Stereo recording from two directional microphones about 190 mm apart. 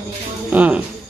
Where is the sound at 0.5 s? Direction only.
10° right (ahead or behind).